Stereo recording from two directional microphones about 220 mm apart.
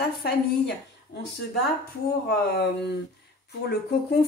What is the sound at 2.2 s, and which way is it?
Speech, 50° left (ahead or behind).